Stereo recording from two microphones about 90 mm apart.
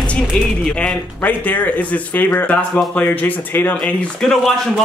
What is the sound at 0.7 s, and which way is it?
Speech, 15° left (ahead or behind).